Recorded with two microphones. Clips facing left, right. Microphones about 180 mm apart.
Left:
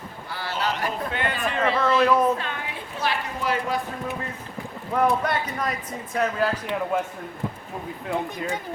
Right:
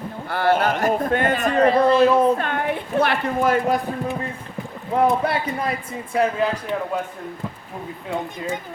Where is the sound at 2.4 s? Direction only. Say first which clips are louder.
Right 9 dB; 55° right (ahead or behind).